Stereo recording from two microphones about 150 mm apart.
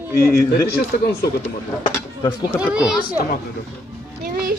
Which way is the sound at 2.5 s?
5° right (ahead or behind).